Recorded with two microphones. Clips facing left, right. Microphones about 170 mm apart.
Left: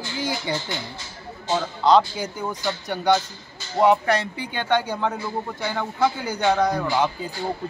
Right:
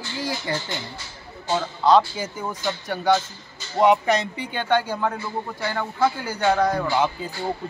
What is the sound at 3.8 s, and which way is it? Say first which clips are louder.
Speech: even; 10° right (ahead or behind).